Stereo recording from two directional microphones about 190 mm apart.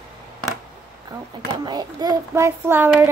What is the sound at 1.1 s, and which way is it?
Speech, 20° right (ahead or behind).